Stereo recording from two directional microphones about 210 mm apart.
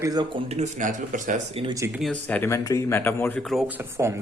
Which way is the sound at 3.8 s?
10° right (ahead or behind).